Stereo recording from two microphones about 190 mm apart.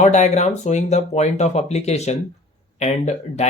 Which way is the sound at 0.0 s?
35° left (ahead or behind).